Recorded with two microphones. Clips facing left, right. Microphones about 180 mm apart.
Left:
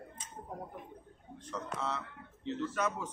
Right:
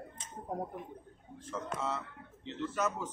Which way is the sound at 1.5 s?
5° right (ahead or behind).